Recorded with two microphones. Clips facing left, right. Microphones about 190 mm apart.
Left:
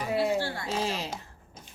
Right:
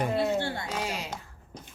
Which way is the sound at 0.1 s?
5° left (ahead or behind).